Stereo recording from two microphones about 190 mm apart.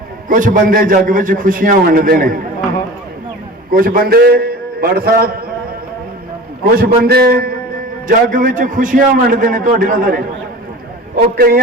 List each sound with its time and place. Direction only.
0.3 s a man's voice: 45° right (ahead or behind)
3.7 s a man's voice: 50° right (ahead or behind)
6.7 s a man's voice: 55° right (ahead or behind)
11.3 s a man's voice: 55° right (ahead or behind)